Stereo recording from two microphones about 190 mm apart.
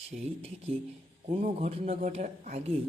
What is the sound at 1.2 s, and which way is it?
A man's voice, 35° right (ahead or behind).